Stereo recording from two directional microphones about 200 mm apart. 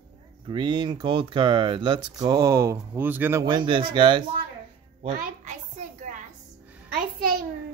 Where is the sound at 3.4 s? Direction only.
20° right (ahead or behind).